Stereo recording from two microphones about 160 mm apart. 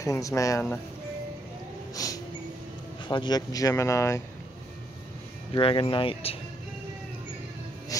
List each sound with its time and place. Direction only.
0.0 s speech: 20° left (ahead or behind)
2.0 s speech: 20° left (ahead or behind)
5.5 s speech: 35° left (ahead or behind)
7.9 s music: 20° left (ahead or behind)